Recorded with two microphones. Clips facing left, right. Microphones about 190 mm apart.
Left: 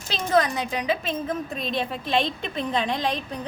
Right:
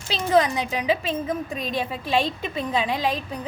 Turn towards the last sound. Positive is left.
turn(degrees=-5)  # may be behind; listen again after turning